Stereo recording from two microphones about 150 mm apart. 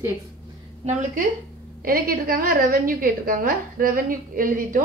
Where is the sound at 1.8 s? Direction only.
75° right (ahead or behind).